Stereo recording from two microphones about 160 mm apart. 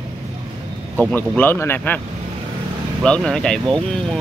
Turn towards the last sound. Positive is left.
turn(degrees=5)  # may be behind; listen again after turning